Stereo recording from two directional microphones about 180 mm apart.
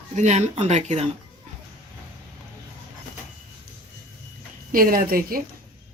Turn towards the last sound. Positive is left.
turn(degrees=-55)  # may be behind; listen again after turning